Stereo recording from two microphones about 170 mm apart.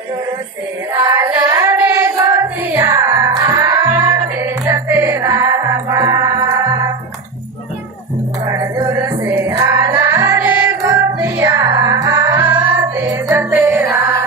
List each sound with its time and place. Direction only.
0.9 s child singing: 20° right (ahead or behind)
8.5 s music: 20° right (ahead or behind)